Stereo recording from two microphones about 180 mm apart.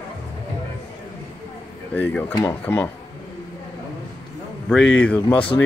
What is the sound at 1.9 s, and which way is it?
Speech, 10° left (ahead or behind).